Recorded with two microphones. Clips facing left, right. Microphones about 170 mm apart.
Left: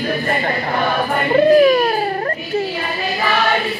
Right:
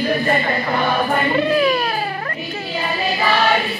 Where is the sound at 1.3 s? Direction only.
40° left (ahead or behind).